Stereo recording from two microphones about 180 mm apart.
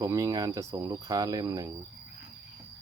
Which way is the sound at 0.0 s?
20° right (ahead or behind).